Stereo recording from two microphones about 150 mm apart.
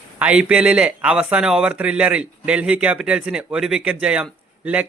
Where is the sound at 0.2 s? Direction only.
10° right (ahead or behind).